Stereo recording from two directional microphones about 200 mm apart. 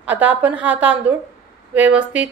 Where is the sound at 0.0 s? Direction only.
5° right (ahead or behind).